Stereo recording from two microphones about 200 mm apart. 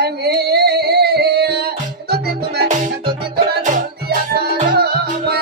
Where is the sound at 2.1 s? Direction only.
45° right (ahead or behind).